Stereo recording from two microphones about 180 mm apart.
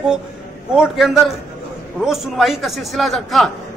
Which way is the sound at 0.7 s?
Centre (ahead or behind).